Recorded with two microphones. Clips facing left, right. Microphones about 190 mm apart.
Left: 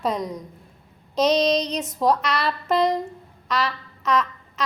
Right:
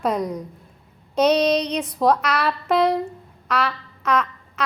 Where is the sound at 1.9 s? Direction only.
Centre (ahead or behind).